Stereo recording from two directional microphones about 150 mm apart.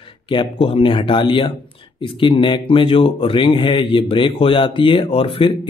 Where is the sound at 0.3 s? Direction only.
35° left (ahead or behind).